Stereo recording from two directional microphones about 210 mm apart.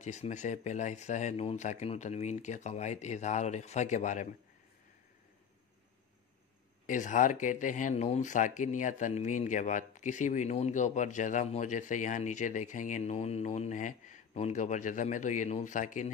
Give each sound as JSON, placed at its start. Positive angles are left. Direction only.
{"t": 0.0, "sound": "speech", "side_deg": 35}
{"t": 6.9, "sound": "speech", "side_deg": 35}